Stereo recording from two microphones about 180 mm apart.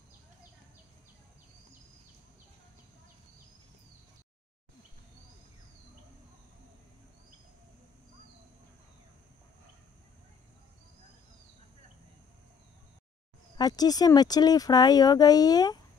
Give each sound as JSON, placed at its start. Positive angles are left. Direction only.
{"t": 13.6, "sound": "speech", "side_deg": 20}